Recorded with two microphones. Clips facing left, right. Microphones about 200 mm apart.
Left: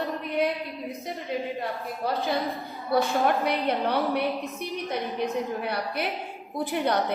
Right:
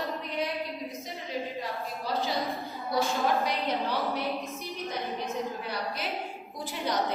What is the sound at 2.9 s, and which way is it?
A woman's voice, 60° left (ahead or behind).